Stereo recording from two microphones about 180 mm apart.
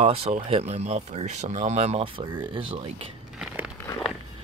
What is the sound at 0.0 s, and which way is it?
Speech, 35° right (ahead or behind).